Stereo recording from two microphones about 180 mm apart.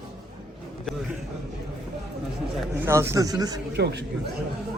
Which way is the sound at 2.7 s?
15° right (ahead or behind).